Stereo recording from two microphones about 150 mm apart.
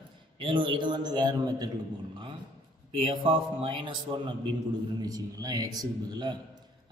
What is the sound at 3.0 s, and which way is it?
Speech, 35° right (ahead or behind).